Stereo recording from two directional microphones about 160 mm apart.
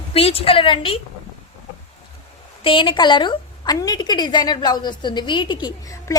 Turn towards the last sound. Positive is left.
turn(degrees=25)  # may be behind; listen again after turning